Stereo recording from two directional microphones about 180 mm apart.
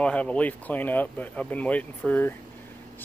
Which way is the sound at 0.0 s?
5° left (ahead or behind).